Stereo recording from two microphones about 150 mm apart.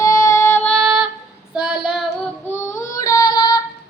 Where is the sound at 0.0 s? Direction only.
20° left (ahead or behind); by 1.0 s centre (ahead or behind).